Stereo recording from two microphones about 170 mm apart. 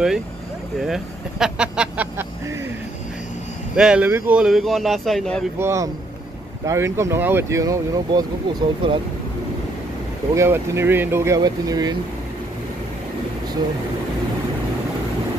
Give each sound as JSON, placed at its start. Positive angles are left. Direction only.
{"t": 0.7, "sound": "speech", "side_deg": -5}
{"t": 3.7, "sound": "speech", "side_deg": -5}
{"t": 5.6, "sound": "speech", "side_deg": -15}
{"t": 10.3, "sound": "speech", "side_deg": -15}